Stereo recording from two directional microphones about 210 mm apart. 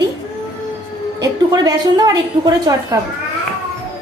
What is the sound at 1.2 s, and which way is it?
A woman's voice, 20° right (ahead or behind).